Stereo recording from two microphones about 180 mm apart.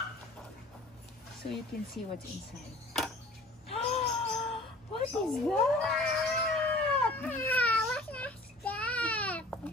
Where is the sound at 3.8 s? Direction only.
35° left (ahead or behind).